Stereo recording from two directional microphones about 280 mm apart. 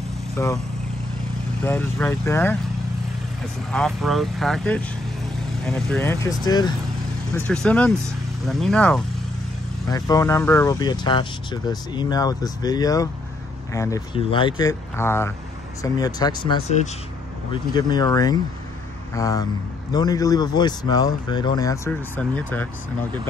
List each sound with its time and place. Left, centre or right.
0.4 s speech: centre
1.6 s speech: centre
3.7 s speech: centre